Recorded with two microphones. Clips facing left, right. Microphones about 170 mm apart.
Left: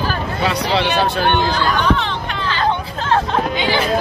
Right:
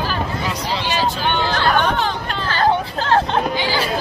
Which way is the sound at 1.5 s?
55° right (ahead or behind).